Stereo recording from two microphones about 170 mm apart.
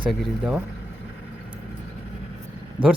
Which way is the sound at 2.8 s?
30° right (ahead or behind).